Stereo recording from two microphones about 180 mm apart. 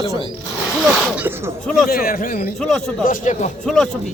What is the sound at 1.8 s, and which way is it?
A man's voice, 55° left (ahead or behind).